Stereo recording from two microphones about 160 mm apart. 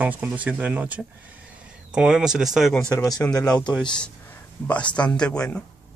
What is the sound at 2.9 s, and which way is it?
Speech, 25° left (ahead or behind).